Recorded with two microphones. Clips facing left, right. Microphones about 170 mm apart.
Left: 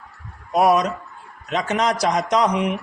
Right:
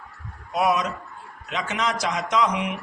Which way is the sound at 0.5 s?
40° left (ahead or behind).